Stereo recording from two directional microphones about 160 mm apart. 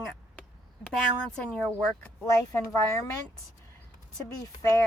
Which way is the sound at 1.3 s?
5° left (ahead or behind).